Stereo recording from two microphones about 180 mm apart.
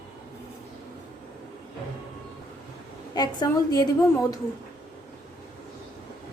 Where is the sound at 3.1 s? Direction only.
25° left (ahead or behind).